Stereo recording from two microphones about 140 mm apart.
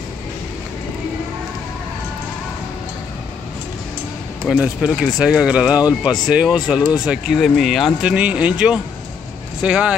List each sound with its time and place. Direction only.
4.5 s speech: 5° right (ahead or behind)